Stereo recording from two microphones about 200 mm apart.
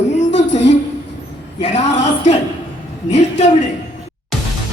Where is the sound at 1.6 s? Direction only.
35° left (ahead or behind).